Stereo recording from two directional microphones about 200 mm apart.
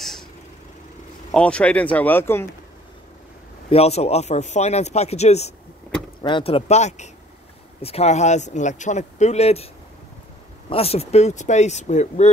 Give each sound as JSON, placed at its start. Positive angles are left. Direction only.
{"t": 1.3, "sound": "speech", "side_deg": 5}
{"t": 3.7, "sound": "speech", "side_deg": 30}
{"t": 10.7, "sound": "speech", "side_deg": 30}